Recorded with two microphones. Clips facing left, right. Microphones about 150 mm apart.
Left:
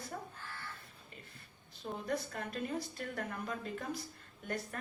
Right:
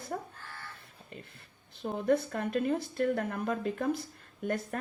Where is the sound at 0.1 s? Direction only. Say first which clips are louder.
Right 8 dB; 55° right (ahead or behind).